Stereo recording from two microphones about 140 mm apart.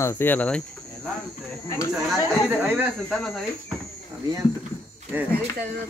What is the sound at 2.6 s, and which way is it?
Speech, 10° right (ahead or behind).